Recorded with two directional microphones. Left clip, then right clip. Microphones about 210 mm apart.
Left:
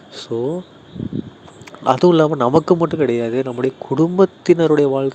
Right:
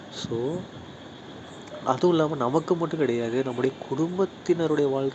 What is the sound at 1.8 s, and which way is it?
Speech, 40° left (ahead or behind).